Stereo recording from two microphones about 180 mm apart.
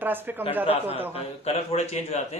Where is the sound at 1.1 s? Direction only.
35° left (ahead or behind).